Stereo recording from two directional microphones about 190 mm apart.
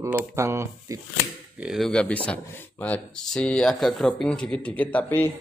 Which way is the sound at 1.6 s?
Centre (ahead or behind).